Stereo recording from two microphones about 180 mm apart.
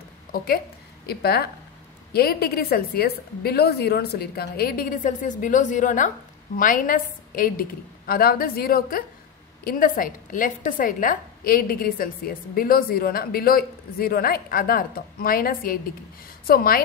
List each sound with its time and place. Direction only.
1.0 s a woman's voice: 60° left (ahead or behind)